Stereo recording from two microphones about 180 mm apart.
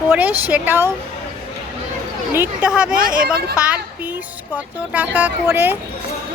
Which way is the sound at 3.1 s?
55° right (ahead or behind).